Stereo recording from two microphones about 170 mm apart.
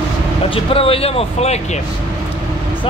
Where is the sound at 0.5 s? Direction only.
35° left (ahead or behind).